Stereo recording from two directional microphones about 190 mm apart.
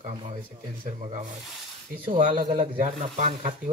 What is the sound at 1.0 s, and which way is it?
A man's voice, 40° right (ahead or behind).